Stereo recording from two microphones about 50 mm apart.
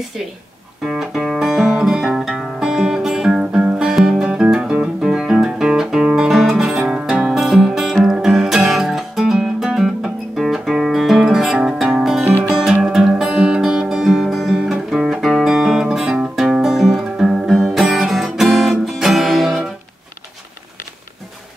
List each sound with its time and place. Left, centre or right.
0.8 s music: centre
14.6 s guitar: centre
16.3 s music: centre